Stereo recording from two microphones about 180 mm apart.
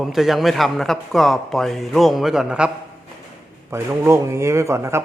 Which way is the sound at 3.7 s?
15° right (ahead or behind).